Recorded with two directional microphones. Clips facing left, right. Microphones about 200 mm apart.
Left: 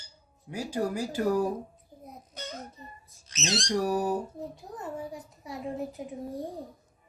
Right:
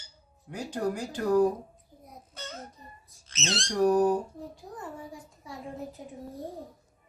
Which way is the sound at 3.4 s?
10° left (ahead or behind).